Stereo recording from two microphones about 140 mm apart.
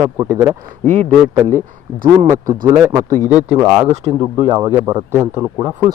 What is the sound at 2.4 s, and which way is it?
Speech, 75° right (ahead or behind).